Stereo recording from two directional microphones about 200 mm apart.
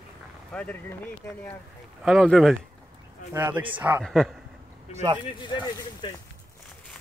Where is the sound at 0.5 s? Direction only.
5° left (ahead or behind).